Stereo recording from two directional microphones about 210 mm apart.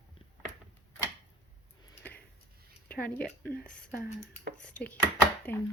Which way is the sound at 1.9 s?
10° left (ahead or behind).